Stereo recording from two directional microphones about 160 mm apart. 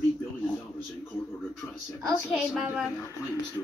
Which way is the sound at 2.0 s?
Centre (ahead or behind).